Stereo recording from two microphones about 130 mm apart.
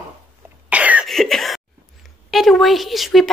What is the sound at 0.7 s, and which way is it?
Cough, 10° right (ahead or behind).